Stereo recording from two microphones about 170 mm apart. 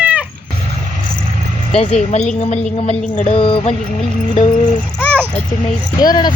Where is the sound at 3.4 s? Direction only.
30° left (ahead or behind).